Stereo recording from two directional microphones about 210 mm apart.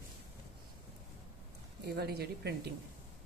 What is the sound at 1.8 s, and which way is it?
Speech, 50° right (ahead or behind).